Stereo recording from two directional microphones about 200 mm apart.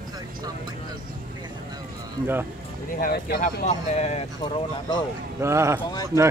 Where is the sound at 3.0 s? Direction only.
45° left (ahead or behind).